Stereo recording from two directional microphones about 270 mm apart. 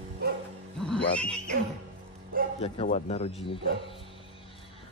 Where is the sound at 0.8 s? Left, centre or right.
Centre.